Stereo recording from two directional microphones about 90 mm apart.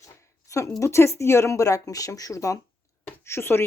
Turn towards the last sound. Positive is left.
turn(degrees=25)  # may be behind; listen again after turning